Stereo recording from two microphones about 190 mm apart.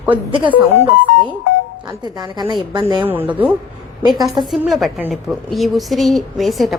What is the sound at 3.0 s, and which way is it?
A woman's voice, 10° right (ahead or behind).